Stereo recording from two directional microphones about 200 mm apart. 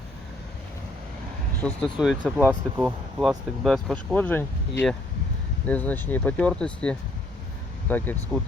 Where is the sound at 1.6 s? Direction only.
Centre (ahead or behind).